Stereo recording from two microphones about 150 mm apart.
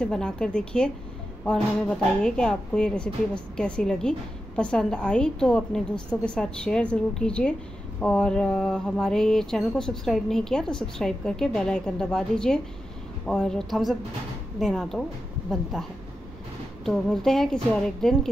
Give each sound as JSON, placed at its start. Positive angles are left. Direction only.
{"t": 0.0, "sound": "a woman's voice", "side_deg": 5}